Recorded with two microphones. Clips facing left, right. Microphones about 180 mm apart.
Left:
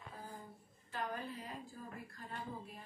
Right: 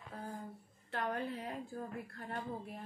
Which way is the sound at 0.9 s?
65° right (ahead or behind).